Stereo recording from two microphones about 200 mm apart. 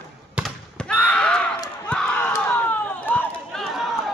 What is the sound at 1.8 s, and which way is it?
Crowd, 5° left (ahead or behind).